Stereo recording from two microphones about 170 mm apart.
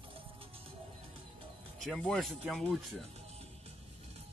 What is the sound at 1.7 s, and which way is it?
Speech, centre (ahead or behind).